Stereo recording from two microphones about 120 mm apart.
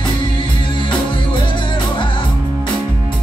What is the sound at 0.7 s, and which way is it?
Music, 45° left (ahead or behind).